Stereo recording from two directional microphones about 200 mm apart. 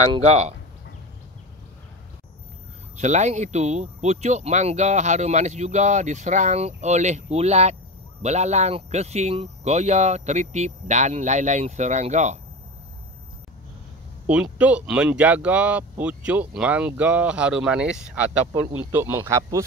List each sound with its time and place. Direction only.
0.1 s speech: 30° right (ahead or behind)
3.0 s speech: 35° right (ahead or behind)
14.2 s speech: 5° right (ahead or behind)